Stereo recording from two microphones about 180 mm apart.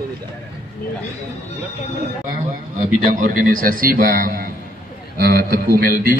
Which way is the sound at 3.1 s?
50° right (ahead or behind).